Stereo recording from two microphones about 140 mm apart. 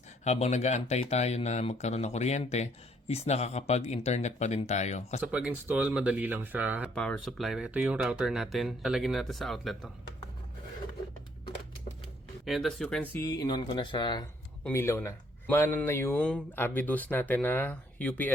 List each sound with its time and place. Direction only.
0.3 s speech: 55° left (ahead or behind)
5.2 s speech: 10° right (ahead or behind)
6.9 s speech: 5° left (ahead or behind)
12.5 s speech: centre (ahead or behind)
13.1 s speech: 25° left (ahead or behind)
14.7 s speech: 20° left (ahead or behind)